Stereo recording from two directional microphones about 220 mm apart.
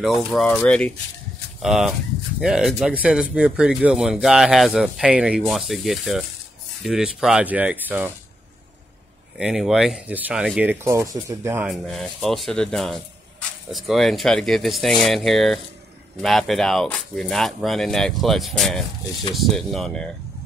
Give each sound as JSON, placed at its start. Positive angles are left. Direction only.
{"t": 0.0, "sound": "speech", "side_deg": 0}
{"t": 9.4, "sound": "speech", "side_deg": 0}
{"t": 11.7, "sound": "speech", "side_deg": 0}